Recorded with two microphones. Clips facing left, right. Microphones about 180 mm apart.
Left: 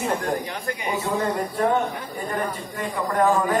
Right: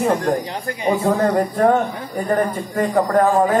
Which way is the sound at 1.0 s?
55° right (ahead or behind).